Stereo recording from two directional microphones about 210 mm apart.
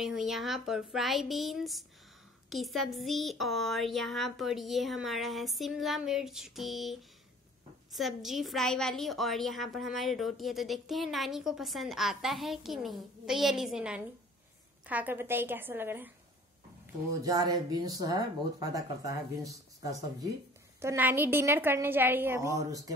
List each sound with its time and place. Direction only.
0.0 s a woman's voice: centre (ahead or behind)
17.2 s speech: 15° right (ahead or behind)